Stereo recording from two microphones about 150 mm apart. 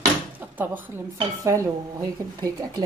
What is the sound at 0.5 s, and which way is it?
Speech, 10° right (ahead or behind).